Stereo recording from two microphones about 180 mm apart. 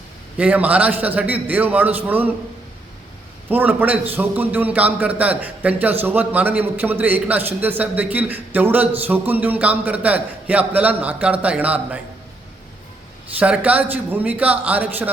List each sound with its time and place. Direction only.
0.3 s a man's voice: 10° right (ahead or behind)
3.5 s a man's voice: 10° right (ahead or behind)
13.4 s a man's voice: 10° right (ahead or behind)